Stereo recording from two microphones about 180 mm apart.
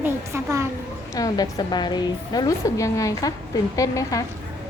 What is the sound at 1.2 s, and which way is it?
A woman's voice, 20° left (ahead or behind).